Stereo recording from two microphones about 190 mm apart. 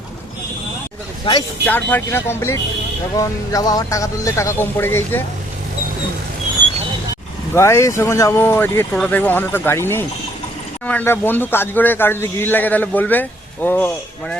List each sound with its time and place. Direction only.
1.2 s speech: 25° left (ahead or behind)
1.9 s speech: 10° left (ahead or behind)
7.5 s speech: 15° left (ahead or behind)